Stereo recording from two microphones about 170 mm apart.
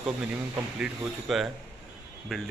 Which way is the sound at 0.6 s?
10° right (ahead or behind).